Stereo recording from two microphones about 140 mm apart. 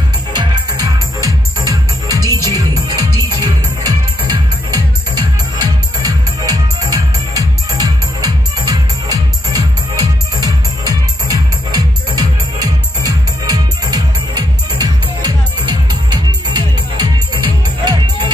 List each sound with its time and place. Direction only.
0.3 s music: 30° right (ahead or behind)